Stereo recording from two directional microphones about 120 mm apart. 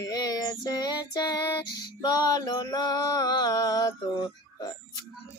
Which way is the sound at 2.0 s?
35° left (ahead or behind).